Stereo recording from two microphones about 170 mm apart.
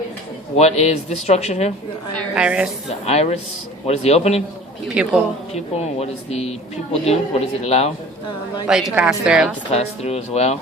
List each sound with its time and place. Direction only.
0.5 s speech: 40° left (ahead or behind)
2.3 s a woman's voice: 5° right (ahead or behind)
3.1 s speech: 40° left (ahead or behind)
5.0 s a woman's voice: 5° right (ahead or behind)
5.7 s speech: 40° left (ahead or behind)
8.6 s a woman's voice: 5° right (ahead or behind)
9.7 s speech: 40° left (ahead or behind)